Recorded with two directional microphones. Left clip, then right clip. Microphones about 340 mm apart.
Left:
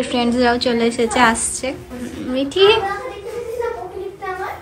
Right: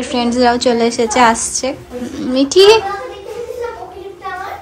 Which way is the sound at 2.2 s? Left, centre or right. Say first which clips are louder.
Right 5 dB; centre.